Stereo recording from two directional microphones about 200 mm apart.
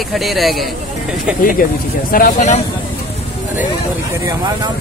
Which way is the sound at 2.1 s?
40° left (ahead or behind).